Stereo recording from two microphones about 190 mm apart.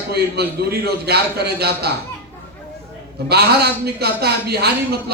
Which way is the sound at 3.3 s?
55° right (ahead or behind).